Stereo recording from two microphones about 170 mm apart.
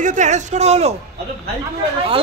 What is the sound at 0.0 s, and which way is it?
Speech, 45° right (ahead or behind).